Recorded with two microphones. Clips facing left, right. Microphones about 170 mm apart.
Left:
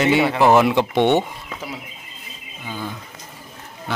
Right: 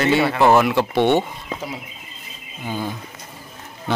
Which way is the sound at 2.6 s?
25° right (ahead or behind).